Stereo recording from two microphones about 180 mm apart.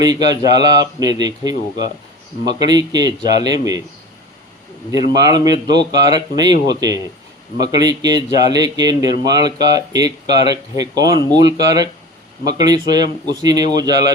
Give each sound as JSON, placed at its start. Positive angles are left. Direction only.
{"t": 0.0, "sound": "speech", "side_deg": -20}
{"t": 4.9, "sound": "speech", "side_deg": -20}